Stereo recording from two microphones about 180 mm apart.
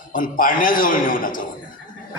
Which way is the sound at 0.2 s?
50° left (ahead or behind).